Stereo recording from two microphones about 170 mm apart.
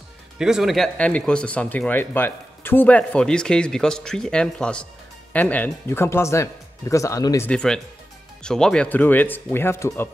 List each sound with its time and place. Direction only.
0.4 s speech: 5° right (ahead or behind); by 7.4 s 20° left (ahead or behind)
7.4 s speech: 5° left (ahead or behind)